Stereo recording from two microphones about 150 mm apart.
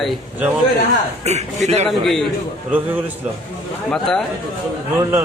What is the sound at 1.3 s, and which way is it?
Speech, 50° right (ahead or behind).